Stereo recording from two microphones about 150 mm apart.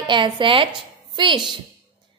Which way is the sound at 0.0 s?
30° right (ahead or behind).